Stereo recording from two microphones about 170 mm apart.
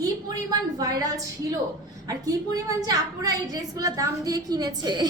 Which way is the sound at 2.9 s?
20° right (ahead or behind).